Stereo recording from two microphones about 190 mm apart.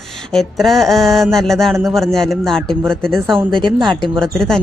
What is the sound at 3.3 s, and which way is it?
Speech, 25° right (ahead or behind).